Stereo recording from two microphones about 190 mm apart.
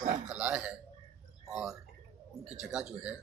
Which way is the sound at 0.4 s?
5° right (ahead or behind).